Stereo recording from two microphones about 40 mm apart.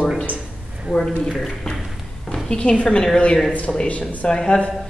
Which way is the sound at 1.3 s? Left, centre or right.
Centre.